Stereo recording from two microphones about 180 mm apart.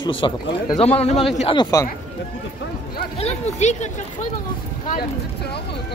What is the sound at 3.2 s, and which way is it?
Speech, 35° left (ahead or behind).